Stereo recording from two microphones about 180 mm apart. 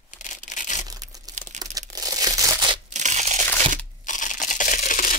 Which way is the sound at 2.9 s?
40° right (ahead or behind).